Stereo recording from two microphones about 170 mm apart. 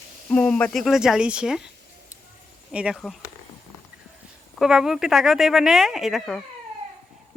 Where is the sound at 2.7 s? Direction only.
5° right (ahead or behind).